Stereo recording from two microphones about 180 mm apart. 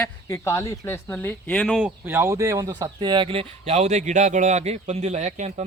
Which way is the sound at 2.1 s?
15° right (ahead or behind).